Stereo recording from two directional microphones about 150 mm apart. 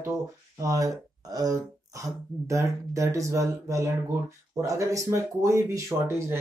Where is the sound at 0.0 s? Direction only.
20° right (ahead or behind).